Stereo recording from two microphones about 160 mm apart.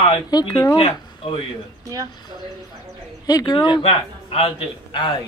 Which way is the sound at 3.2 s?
25° left (ahead or behind).